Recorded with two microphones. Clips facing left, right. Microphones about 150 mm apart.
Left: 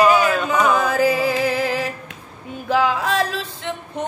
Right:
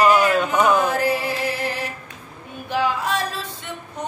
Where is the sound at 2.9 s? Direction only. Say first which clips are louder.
Left 3 dB; 90° left.